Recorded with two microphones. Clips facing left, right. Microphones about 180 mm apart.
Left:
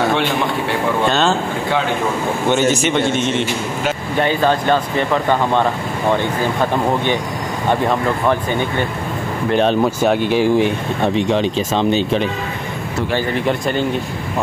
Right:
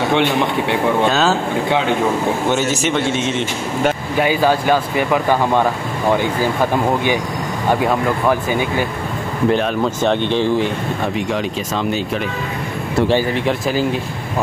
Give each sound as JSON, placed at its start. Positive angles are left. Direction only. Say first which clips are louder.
{"t": 1.0, "sound": "a man's voice", "louder": "left 2 dB", "side_deg": -5}
{"t": 2.5, "sound": "a man's voice", "louder": "left 2 dB", "side_deg": -5}
{"t": 9.8, "sound": "speech", "louder": "left 1 dB", "side_deg": 5}
{"t": 11.1, "sound": "speech", "louder": "left 4 dB", "side_deg": 25}
{"t": 13.3, "sound": "a man's voice", "louder": "even", "side_deg": 0}